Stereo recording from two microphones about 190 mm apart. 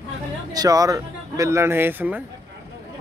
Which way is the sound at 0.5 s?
20° right (ahead or behind).